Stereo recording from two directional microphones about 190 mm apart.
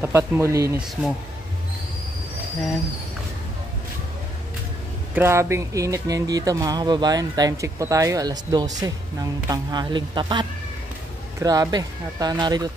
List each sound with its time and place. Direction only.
0.0 s speech: 15° right (ahead or behind)
5.1 s speech: 15° right (ahead or behind)